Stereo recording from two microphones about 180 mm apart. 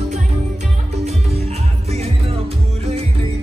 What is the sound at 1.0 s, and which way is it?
Music, 35° right (ahead or behind).